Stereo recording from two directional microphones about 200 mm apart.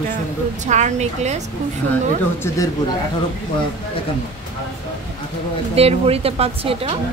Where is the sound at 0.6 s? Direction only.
35° right (ahead or behind).